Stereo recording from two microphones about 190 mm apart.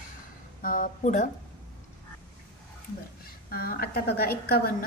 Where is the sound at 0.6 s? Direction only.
45° left (ahead or behind).